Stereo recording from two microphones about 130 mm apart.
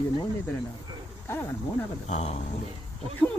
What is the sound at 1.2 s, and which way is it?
Speech, 20° left (ahead or behind).